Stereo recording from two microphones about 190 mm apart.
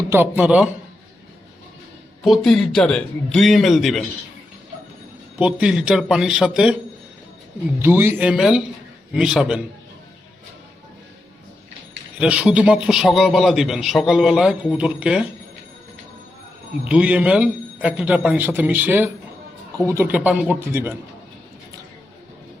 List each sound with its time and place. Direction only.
0.1 s a man's voice: 10° right (ahead or behind)
2.2 s a man's voice: centre (ahead or behind)
5.4 s a man's voice: 5° right (ahead or behind)
7.8 s a man's voice: 10° right (ahead or behind)
12.2 s a man's voice: 5° right (ahead or behind)
16.8 s a man's voice: 5° right (ahead or behind)